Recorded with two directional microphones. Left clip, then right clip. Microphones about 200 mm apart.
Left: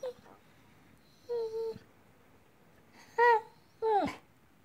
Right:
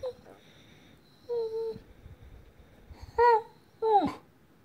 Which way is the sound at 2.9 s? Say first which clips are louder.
Right 3 dB; 5° left (ahead or behind).